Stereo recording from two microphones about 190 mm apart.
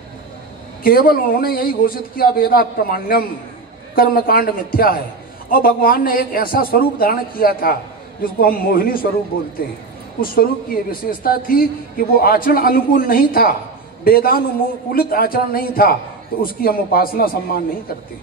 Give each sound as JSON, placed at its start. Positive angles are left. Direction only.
{"t": 0.8, "sound": "a man's voice", "side_deg": 50}